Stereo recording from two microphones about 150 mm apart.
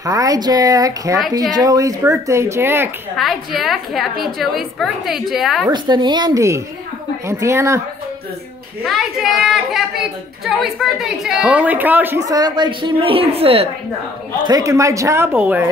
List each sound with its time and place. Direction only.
0.0 s speech: 20° right (ahead or behind)
3.2 s a woman's voice: centre (ahead or behind)
5.7 s speech: 30° right (ahead or behind)
8.8 s a woman's voice: centre (ahead or behind); by 13.7 s 40° right (ahead or behind)
14.4 s speech: 25° right (ahead or behind)